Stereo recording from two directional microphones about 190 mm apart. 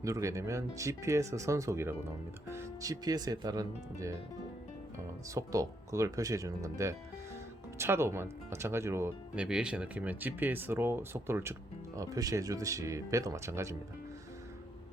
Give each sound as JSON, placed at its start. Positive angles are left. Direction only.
{"t": 0.0, "sound": "speech", "side_deg": -15}
{"t": 5.3, "sound": "speech", "side_deg": -15}